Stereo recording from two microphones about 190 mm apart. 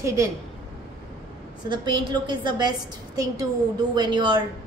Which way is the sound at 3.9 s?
25° right (ahead or behind).